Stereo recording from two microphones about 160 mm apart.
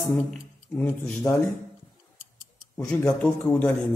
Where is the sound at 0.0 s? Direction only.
Centre (ahead or behind).